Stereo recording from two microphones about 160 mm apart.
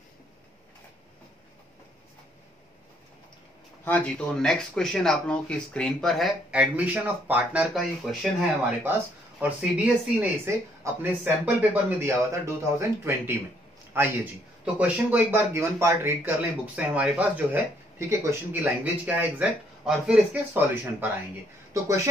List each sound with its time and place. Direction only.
3.8 s speech: 10° left (ahead or behind)
8.8 s speech: 10° right (ahead or behind)